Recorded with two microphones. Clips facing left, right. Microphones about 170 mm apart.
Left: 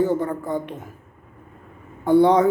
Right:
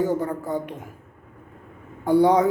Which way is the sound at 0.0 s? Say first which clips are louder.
Left 2 dB; 10° right (ahead or behind).